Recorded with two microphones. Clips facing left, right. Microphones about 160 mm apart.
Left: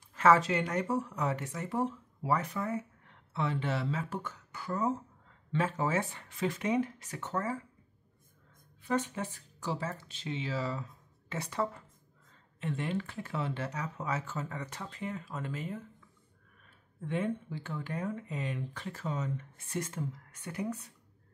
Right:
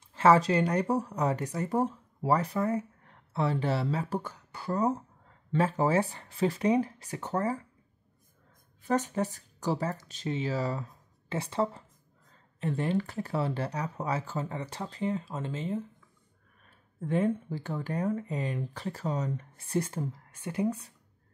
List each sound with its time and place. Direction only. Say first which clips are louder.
0.1 s speech: right 3 dB; 30° right (ahead or behind)
8.8 s speech: right 4 dB; 40° right (ahead or behind)
17.0 s speech: right 5 dB; 40° right (ahead or behind)